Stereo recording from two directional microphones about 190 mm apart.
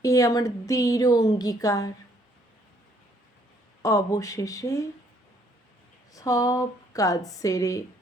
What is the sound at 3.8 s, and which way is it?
Speech, 15° left (ahead or behind).